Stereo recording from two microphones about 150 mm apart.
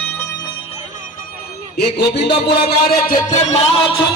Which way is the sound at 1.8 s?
90° left.